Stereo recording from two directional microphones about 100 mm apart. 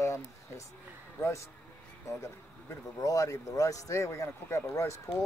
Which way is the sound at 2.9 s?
35° left (ahead or behind).